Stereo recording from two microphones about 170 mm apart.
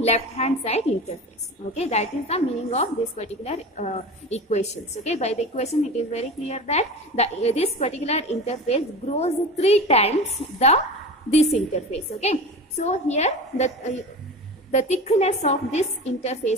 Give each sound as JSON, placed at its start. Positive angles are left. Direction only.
{"t": 0.0, "sound": "a woman's voice", "side_deg": 40}
{"t": 11.2, "sound": "a woman's voice", "side_deg": 40}